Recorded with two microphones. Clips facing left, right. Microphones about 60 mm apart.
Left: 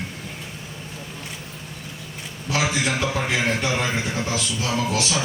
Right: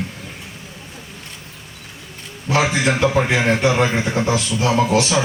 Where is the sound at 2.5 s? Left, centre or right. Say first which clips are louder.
Right 5 dB; right.